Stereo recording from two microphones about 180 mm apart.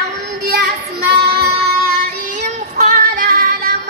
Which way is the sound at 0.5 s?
65° right (ahead or behind).